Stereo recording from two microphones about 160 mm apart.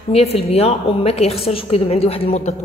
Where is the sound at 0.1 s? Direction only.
40° left (ahead or behind).